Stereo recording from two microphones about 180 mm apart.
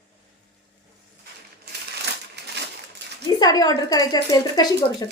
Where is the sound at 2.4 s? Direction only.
70° right (ahead or behind).